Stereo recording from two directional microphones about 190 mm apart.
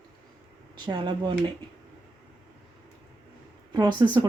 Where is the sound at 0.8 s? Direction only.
25° right (ahead or behind).